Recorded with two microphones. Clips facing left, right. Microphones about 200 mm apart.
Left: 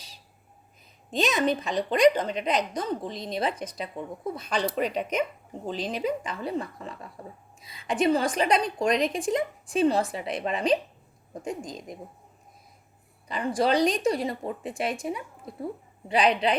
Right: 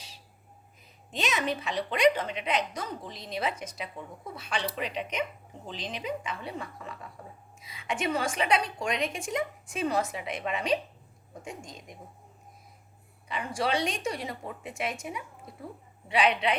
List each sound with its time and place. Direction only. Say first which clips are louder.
1.1 s a woman's voice: left 6 dB; 35° left (ahead or behind)
13.6 s a woman's voice: left 7 dB; 35° left (ahead or behind)